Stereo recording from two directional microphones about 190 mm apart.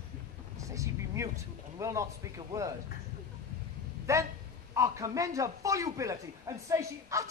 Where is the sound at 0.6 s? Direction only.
15° right (ahead or behind).